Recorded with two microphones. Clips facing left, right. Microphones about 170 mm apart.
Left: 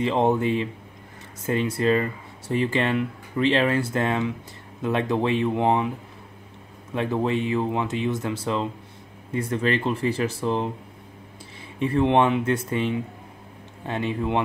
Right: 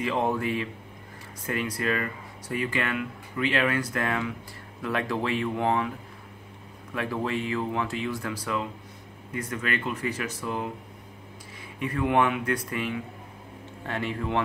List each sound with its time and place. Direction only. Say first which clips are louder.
0.0 s speech: left 5 dB; 25° left (ahead or behind)
11.8 s speech: left 5 dB; 25° left (ahead or behind)